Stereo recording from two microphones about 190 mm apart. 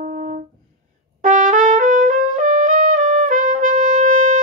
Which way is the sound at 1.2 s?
45° right (ahead or behind).